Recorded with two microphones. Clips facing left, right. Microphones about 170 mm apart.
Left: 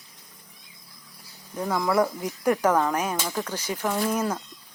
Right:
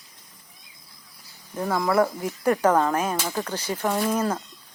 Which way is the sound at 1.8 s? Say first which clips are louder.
Right 2 dB; 10° left (ahead or behind).